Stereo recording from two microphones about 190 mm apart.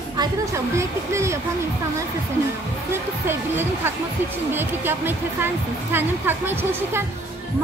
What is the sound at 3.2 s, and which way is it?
Speech, 10° right (ahead or behind).